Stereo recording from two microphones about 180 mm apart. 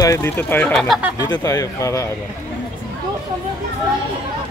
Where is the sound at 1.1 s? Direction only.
20° left (ahead or behind).